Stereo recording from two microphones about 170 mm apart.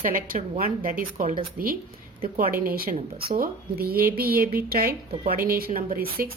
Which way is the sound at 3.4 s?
60° right (ahead or behind).